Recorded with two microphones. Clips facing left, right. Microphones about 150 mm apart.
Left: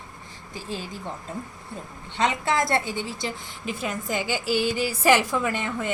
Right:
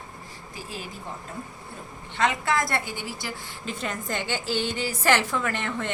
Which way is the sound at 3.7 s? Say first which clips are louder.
Left 2 dB; 5° left (ahead or behind).